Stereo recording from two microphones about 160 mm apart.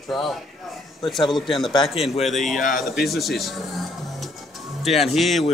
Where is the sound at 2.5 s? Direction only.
60° left (ahead or behind).